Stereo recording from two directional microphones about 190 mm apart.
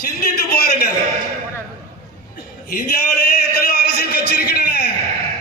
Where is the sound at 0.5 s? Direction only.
55° left (ahead or behind).